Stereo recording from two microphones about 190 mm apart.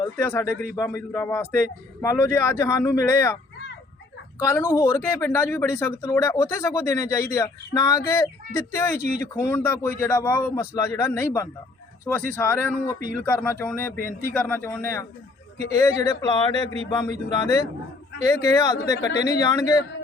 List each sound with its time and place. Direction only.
0.2 s speech: 10° left (ahead or behind)
4.4 s speech: 10° left (ahead or behind)